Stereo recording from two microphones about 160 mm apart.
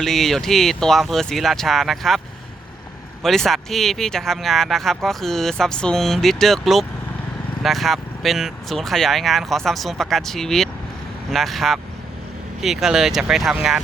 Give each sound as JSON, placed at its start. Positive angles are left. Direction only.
{"t": 0.0, "sound": "speech", "side_deg": 0}
{"t": 3.2, "sound": "speech", "side_deg": 0}